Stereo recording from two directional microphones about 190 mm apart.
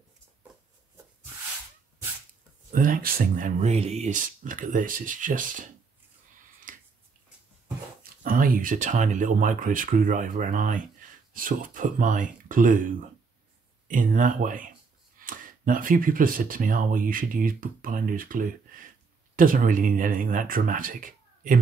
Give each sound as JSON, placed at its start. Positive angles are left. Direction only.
{"t": 2.7, "sound": "speech", "side_deg": -45}
{"t": 6.7, "sound": "finger snapping", "side_deg": -45}
{"t": 8.0, "sound": "speech", "side_deg": -50}